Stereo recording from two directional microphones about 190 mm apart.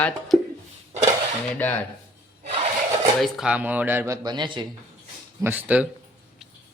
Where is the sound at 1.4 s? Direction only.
10° left (ahead or behind).